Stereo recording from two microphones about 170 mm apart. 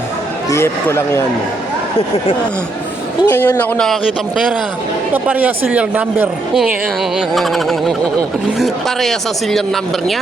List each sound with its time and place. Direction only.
0.5 s speech: 15° left (ahead or behind)
3.2 s speech: 10° left (ahead or behind)
5.1 s speech: 10° right (ahead or behind)